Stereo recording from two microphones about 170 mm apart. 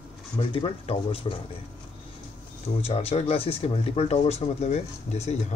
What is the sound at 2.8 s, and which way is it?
Speech, 35° left (ahead or behind).